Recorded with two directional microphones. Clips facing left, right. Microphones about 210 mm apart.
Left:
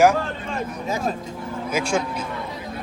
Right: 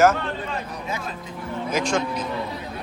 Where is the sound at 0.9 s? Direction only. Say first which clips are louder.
Left 8 dB; 45° left (ahead or behind).